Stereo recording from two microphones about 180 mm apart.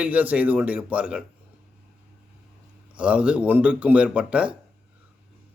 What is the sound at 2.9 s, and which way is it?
A man's voice, 5° right (ahead or behind).